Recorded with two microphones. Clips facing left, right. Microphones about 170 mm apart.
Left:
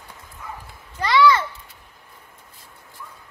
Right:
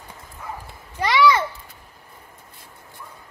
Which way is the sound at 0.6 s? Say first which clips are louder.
Right 2 dB; 15° right (ahead or behind).